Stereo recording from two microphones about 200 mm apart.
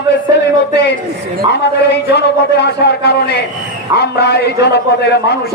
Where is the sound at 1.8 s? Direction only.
55° left (ahead or behind).